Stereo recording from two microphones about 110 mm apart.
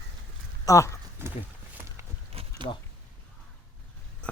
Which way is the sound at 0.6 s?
30° left (ahead or behind).